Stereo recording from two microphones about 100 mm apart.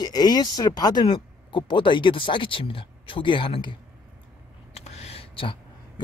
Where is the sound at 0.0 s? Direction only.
45° left (ahead or behind).